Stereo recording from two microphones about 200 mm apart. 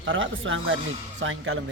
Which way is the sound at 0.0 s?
75° right (ahead or behind).